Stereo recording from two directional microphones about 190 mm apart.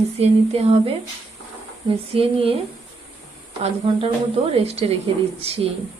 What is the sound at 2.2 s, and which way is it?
Speech, 30° right (ahead or behind).